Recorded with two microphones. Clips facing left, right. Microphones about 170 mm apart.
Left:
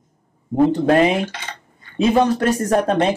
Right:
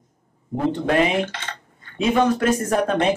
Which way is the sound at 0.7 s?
40° left (ahead or behind).